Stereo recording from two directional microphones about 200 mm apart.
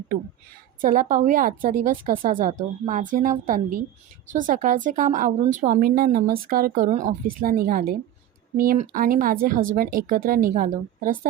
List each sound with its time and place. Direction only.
0.8 s a woman's voice: 40° right (ahead or behind)